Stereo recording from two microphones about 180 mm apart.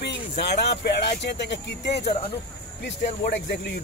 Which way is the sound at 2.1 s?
30° left (ahead or behind).